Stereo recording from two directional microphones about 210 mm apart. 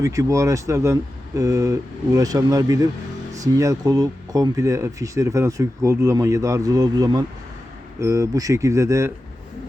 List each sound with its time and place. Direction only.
0.0 s speech: 15° right (ahead or behind)